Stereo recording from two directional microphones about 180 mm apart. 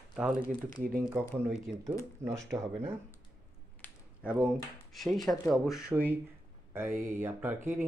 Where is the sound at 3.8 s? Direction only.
10° left (ahead or behind).